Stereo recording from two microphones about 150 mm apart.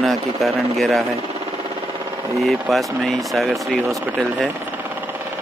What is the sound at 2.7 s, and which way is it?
Speech, centre (ahead or behind).